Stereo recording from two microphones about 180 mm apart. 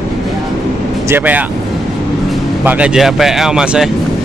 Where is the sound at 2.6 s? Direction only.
10° right (ahead or behind).